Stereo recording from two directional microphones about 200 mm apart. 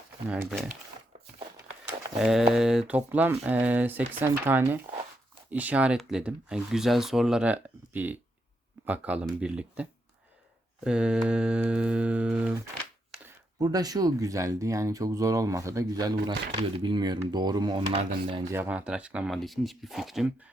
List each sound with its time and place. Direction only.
2.1 s speech: centre (ahead or behind)
10.8 s speech: 5° right (ahead or behind)
13.2 s speech: 20° right (ahead or behind)
18.5 s speech: 10° right (ahead or behind)